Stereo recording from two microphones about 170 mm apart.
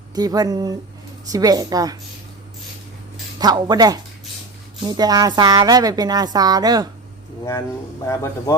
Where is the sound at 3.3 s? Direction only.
25° right (ahead or behind).